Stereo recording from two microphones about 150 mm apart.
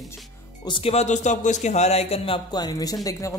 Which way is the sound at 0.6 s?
35° left (ahead or behind).